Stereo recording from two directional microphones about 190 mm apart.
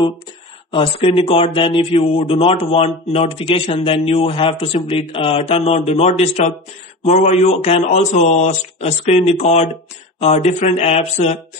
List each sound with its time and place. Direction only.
0.7 s speech: 30° left (ahead or behind)